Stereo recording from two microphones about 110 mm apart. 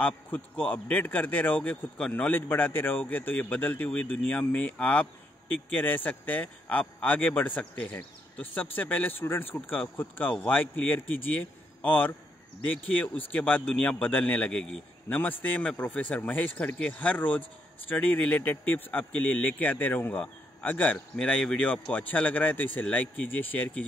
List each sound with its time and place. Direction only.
0.0 s speech: 15° left (ahead or behind)